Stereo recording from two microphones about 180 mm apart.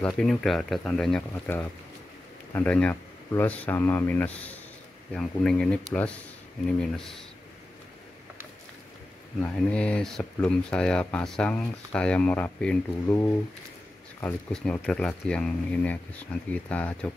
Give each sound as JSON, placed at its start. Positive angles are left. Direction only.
{"t": 0.0, "sound": "speech", "side_deg": 5}
{"t": 9.4, "sound": "speech", "side_deg": 5}
{"t": 14.2, "sound": "speech", "side_deg": 5}